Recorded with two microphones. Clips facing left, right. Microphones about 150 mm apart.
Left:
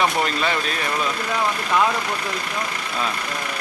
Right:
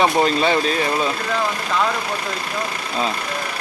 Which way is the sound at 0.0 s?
30° right (ahead or behind).